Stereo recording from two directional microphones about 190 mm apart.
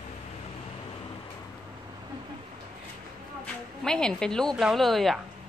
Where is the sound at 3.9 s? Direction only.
5° left (ahead or behind).